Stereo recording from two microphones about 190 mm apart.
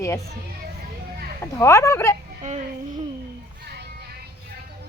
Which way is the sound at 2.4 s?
40° right (ahead or behind).